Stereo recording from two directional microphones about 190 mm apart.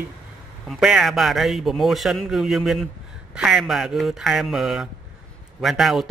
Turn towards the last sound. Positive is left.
turn(degrees=0)  # may be behind; listen again after turning